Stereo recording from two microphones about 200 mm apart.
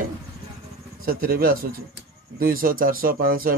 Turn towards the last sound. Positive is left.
turn(degrees=-45)  # may be behind; listen again after turning